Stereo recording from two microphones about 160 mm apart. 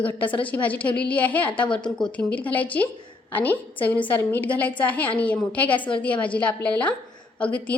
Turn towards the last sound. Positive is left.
turn(degrees=10)  # may be behind; listen again after turning